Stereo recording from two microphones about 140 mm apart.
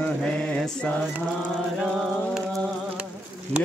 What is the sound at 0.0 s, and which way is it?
Mantra, 5° left (ahead or behind).